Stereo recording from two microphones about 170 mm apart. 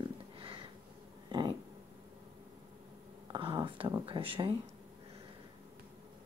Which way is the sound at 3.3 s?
30° right (ahead or behind).